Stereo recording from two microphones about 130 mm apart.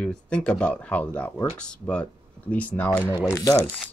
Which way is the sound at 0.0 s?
10° left (ahead or behind).